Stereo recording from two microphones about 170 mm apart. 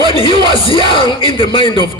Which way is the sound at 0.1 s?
30° left (ahead or behind).